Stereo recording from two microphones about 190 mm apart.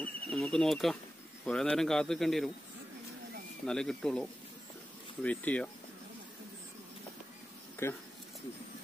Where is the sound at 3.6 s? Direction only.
5° left (ahead or behind).